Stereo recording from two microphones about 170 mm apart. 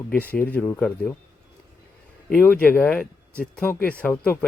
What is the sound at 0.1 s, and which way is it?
Speech, 10° left (ahead or behind).